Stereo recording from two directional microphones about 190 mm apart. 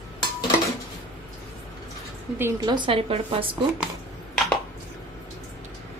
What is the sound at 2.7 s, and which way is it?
Speech, 25° right (ahead or behind).